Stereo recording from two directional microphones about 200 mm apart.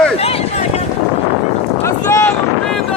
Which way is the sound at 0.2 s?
30° left (ahead or behind).